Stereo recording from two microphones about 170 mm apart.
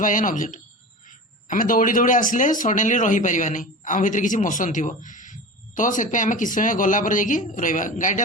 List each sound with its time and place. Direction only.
0.0 s speech: 50° left (ahead or behind)